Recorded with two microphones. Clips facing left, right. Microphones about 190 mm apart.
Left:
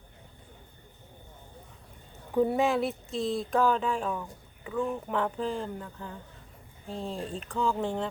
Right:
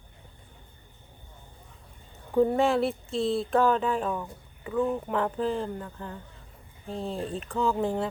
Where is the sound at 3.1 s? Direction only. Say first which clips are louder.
Right 3 dB; 30° right (ahead or behind).